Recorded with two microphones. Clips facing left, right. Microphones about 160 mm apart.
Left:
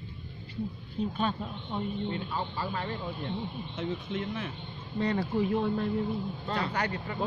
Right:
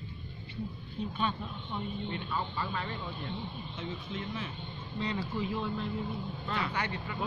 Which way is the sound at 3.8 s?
55° left (ahead or behind).